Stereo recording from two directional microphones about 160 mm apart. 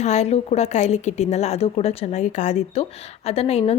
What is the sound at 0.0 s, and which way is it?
A woman's voice, 45° left (ahead or behind).